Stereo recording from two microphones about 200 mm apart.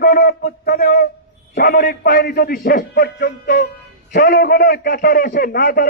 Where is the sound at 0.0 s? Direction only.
50° left (ahead or behind).